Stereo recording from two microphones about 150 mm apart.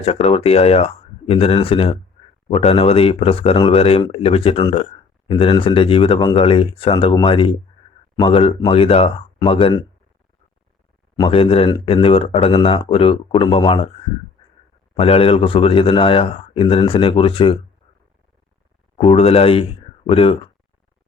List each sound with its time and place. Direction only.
0.0 s speech: 40° left (ahead or behind)
11.2 s speech: 40° left (ahead or behind)
14.9 s speech: 40° left (ahead or behind)
18.9 s speech: 40° left (ahead or behind)